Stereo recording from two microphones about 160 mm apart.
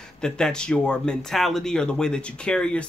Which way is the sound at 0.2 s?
5° left (ahead or behind).